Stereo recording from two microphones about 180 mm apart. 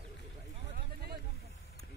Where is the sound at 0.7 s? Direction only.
60° right (ahead or behind).